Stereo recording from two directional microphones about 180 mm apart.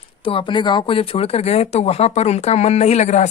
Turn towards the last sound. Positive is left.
turn(degrees=40)  # may be behind; listen again after turning